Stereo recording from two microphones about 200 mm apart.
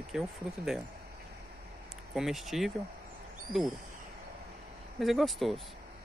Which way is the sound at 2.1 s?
Centre (ahead or behind).